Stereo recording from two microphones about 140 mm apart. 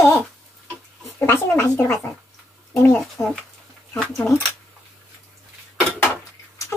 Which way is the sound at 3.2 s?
25° left (ahead or behind).